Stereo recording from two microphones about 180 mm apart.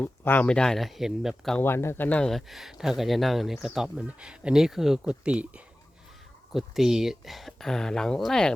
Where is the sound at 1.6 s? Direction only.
15° left (ahead or behind).